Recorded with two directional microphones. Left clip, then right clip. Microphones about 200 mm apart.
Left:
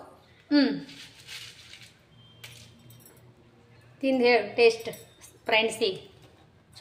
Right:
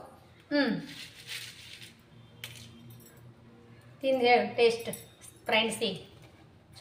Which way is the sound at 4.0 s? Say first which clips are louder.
Left 2 dB; 60° left (ahead or behind).